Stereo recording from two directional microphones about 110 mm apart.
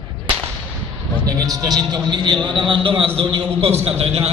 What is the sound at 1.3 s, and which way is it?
A man's voice, 35° right (ahead or behind).